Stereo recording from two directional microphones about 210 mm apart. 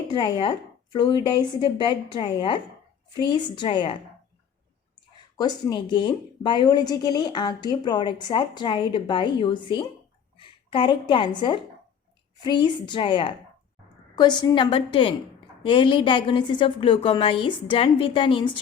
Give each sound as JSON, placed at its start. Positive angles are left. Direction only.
{"t": 0.1, "sound": "speech", "side_deg": 20}
{"t": 2.1, "sound": "speech", "side_deg": 25}
{"t": 5.4, "sound": "a woman's voice", "side_deg": 20}